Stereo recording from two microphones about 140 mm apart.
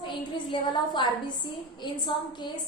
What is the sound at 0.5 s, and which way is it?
A woman's voice, 35° left (ahead or behind).